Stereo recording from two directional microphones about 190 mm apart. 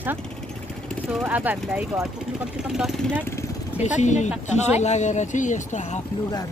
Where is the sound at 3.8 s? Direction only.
40° left (ahead or behind).